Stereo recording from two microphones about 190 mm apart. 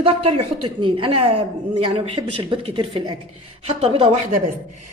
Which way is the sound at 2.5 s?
30° right (ahead or behind).